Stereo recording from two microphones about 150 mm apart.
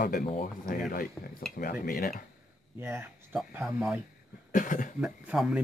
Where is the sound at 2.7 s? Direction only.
15° right (ahead or behind).